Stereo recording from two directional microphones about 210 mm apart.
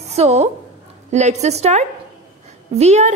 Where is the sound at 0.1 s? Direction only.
30° right (ahead or behind).